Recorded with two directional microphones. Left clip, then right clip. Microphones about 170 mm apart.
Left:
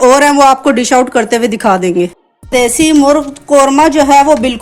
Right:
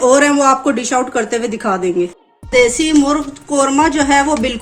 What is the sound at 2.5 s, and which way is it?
A woman's voice, 40° left (ahead or behind).